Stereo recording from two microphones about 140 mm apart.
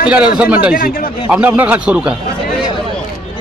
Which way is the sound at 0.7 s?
90° left.